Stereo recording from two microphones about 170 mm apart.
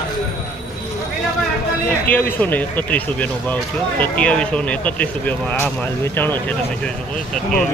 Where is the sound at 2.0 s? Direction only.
10° left (ahead or behind).